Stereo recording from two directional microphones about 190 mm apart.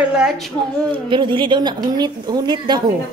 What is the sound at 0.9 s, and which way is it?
A woman's voice, 25° right (ahead or behind).